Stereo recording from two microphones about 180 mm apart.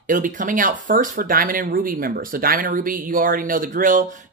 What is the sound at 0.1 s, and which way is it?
Speech, 50° right (ahead or behind).